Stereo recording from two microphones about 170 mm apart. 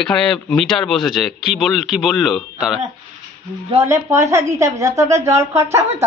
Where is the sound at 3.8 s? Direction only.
15° right (ahead or behind).